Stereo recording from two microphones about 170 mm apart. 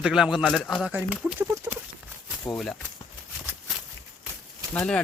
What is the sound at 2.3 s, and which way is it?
Speech, centre (ahead or behind).